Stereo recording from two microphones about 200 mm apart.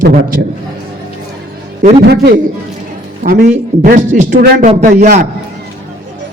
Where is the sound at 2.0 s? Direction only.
55° right (ahead or behind).